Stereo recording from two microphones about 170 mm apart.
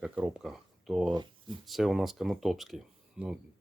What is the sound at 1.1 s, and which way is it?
Speech, 30° right (ahead or behind).